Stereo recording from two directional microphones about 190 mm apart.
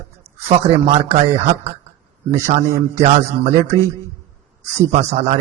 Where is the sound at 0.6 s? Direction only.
30° right (ahead or behind).